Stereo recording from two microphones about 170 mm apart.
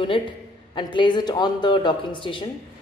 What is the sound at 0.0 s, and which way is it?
A woman's voice, 30° left (ahead or behind).